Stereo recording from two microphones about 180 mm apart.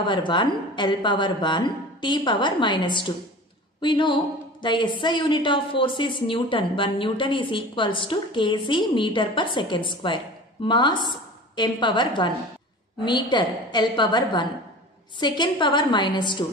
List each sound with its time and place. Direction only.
0.0 s a woman's voice: 25° left (ahead or behind)